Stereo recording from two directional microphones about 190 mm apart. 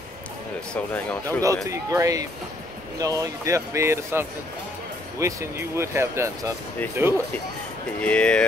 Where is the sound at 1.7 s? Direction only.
15° right (ahead or behind).